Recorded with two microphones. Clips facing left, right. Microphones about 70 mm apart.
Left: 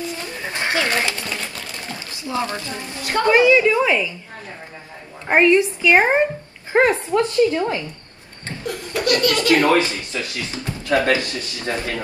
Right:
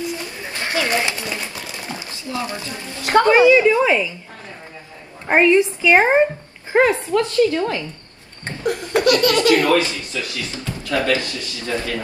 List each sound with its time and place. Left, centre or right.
0.5 s bird: left
0.8 s a sound: centre
2.6 s speech: left
3.3 s a woman's voice: right
5.3 s a woman's voice: right
6.7 s speech: left
8.5 s laughter: right
9.2 s a woman's voice: right
9.5 s speech: left